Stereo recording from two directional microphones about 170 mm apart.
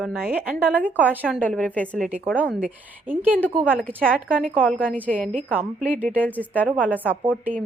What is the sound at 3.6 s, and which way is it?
Speech, 10° right (ahead or behind).